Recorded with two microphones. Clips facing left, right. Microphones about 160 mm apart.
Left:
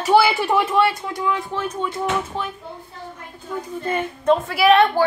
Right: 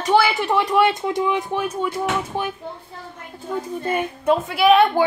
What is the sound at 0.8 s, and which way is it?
Speech, 25° right (ahead or behind).